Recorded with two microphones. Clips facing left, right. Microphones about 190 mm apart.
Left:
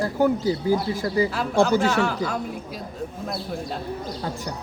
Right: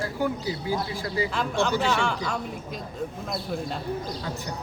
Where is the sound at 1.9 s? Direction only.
5° left (ahead or behind).